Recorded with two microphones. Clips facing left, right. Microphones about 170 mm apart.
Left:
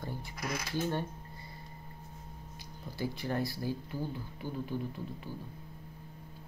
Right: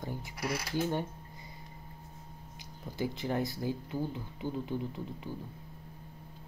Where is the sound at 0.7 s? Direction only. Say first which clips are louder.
Right 1 dB; 15° right (ahead or behind).